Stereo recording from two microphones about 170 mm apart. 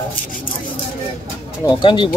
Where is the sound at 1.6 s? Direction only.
25° left (ahead or behind).